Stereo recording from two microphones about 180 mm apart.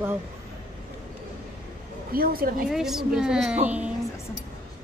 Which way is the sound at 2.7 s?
Centre (ahead or behind).